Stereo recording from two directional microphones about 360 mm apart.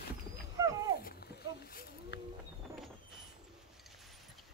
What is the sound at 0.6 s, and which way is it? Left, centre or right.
Wild animals, centre.